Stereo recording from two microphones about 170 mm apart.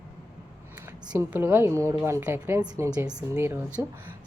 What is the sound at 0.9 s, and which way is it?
A woman's voice, 15° right (ahead or behind).